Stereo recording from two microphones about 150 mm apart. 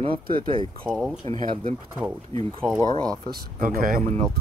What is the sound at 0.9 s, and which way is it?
Speech, 5° right (ahead or behind).